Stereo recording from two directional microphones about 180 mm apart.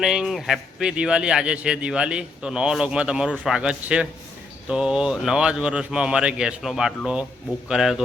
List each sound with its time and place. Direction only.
0.0 s speech: centre (ahead or behind)